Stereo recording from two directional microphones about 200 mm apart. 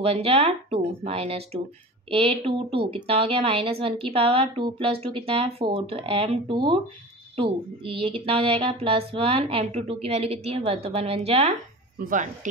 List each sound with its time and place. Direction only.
0.0 s speech: 30° right (ahead or behind)
12.0 s speech: 40° right (ahead or behind)